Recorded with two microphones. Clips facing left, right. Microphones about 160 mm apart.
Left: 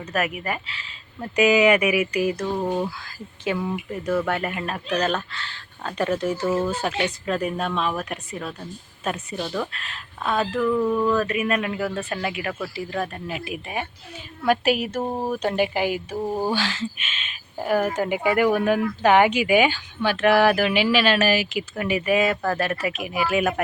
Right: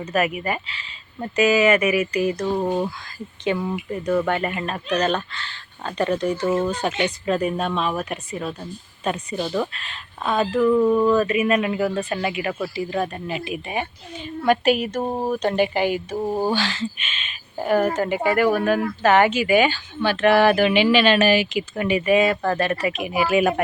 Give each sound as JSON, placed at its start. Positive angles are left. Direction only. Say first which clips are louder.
{"t": 0.0, "sound": "speech", "louder": "right 4 dB", "side_deg": 0}
{"t": 1.4, "sound": "speech", "louder": "even", "side_deg": 15}
{"t": 2.6, "sound": "speech", "louder": "right 2 dB", "side_deg": -5}
{"t": 10.8, "sound": "speech", "louder": "right 4 dB", "side_deg": -15}
{"t": 11.2, "sound": "speech", "louder": "right 4 dB", "side_deg": 0}
{"t": 15.0, "sound": "speech", "louder": "right 2 dB", "side_deg": -10}
{"t": 15.3, "sound": "speech", "louder": "right 3 dB", "side_deg": 5}
{"t": 16.1, "sound": "speech", "louder": "right 2 dB", "side_deg": -10}
{"t": 16.5, "sound": "speech", "louder": "right 2 dB", "side_deg": 10}